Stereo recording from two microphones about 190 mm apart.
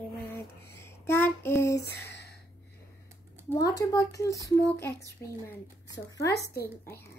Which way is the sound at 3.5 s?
20° left (ahead or behind).